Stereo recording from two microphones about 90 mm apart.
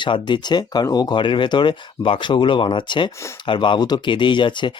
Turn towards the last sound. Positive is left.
turn(degrees=60)  # may be behind; listen again after turning